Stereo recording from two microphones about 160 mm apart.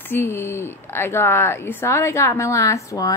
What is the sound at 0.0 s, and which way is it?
Speech, 15° left (ahead or behind).